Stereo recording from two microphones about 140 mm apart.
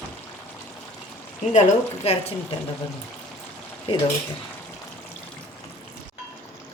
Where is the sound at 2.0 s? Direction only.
45° left (ahead or behind).